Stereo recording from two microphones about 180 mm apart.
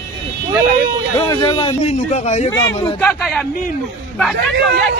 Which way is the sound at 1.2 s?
25° left (ahead or behind).